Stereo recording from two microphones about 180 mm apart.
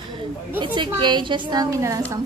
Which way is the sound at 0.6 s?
25° right (ahead or behind).